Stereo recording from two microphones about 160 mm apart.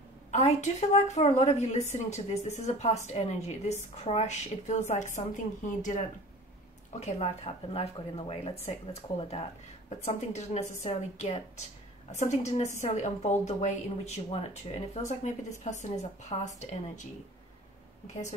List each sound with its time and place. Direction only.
0.3 s a woman's voice: 40° left (ahead or behind)
9.8 s a woman's voice: 45° left (ahead or behind)